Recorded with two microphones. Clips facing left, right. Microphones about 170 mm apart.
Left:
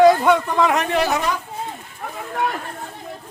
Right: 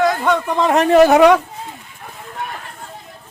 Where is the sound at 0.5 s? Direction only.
35° right (ahead or behind).